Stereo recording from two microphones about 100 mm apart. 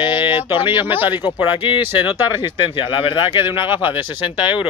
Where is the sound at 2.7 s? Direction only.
55° left (ahead or behind).